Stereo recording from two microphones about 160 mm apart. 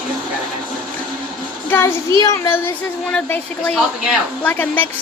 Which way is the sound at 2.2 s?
20° left (ahead or behind).